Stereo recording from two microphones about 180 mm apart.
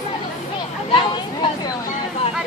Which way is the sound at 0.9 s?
25° left (ahead or behind).